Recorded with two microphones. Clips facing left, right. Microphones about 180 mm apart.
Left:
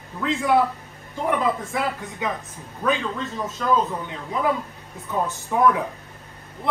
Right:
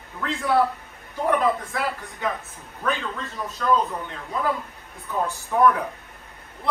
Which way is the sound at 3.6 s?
15° left (ahead or behind).